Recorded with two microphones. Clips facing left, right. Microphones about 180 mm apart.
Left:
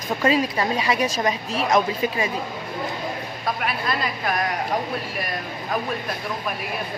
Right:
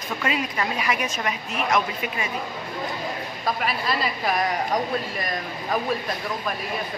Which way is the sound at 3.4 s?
Centre (ahead or behind).